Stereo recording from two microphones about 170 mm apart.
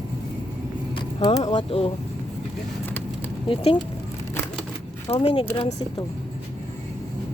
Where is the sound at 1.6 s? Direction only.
35° left (ahead or behind).